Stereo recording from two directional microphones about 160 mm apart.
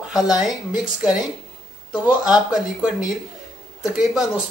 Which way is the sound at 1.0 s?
5° right (ahead or behind).